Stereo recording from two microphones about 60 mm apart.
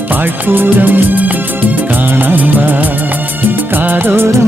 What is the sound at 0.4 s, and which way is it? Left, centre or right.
Music, right.